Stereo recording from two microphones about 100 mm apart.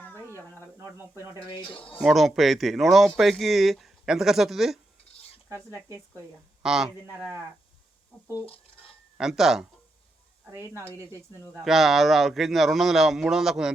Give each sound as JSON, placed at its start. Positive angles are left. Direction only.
{"t": 0.9, "sound": "speech", "side_deg": -25}
{"t": 2.0, "sound": "a man's voice", "side_deg": 0}
{"t": 5.5, "sound": "speech", "side_deg": -25}
{"t": 6.6, "sound": "a man's voice", "side_deg": -5}
{"t": 8.1, "sound": "speech", "side_deg": 10}
{"t": 9.1, "sound": "a man's voice", "side_deg": -5}
{"t": 10.5, "sound": "speech", "side_deg": -25}
{"t": 11.6, "sound": "a man's voice", "side_deg": 0}